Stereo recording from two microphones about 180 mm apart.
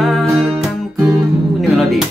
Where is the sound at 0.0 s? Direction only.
Centre (ahead or behind).